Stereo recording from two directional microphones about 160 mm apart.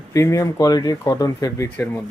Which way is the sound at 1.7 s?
10° left (ahead or behind).